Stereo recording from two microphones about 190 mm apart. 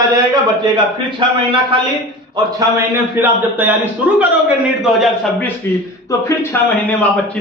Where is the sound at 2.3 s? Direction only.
15° right (ahead or behind).